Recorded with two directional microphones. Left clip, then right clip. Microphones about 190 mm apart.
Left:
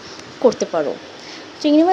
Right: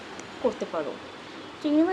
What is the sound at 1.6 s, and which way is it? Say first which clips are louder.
Speech: left 10 dB; 25° left (ahead or behind).